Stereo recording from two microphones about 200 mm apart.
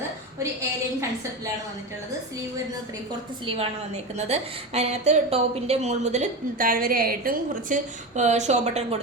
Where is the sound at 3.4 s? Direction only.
30° right (ahead or behind).